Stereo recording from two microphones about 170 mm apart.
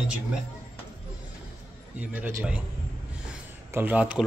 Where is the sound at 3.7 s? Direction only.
10° right (ahead or behind).